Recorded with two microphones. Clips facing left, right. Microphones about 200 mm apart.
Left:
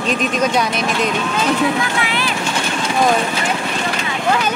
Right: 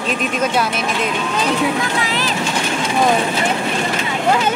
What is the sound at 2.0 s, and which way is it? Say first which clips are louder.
Vehicle: even; 40° right (ahead or behind).